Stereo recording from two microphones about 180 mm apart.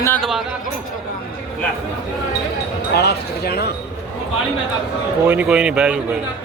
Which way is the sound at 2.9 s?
65° left (ahead or behind).